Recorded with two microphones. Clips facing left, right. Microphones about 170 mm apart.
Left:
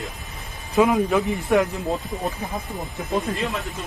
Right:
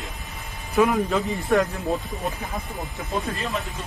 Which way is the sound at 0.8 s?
20° left (ahead or behind).